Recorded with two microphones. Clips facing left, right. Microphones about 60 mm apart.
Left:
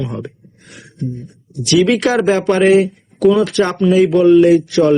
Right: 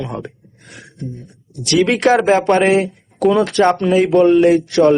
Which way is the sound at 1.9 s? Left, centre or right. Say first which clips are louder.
Even; right.